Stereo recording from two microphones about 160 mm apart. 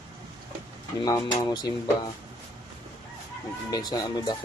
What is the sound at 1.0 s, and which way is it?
Speech, 25° left (ahead or behind).